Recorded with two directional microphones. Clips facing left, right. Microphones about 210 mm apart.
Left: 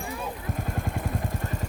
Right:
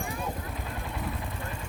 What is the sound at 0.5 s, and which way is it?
Vehicle, 45° left (ahead or behind).